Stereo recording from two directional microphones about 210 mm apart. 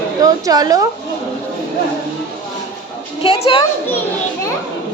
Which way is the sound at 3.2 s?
25° left (ahead or behind).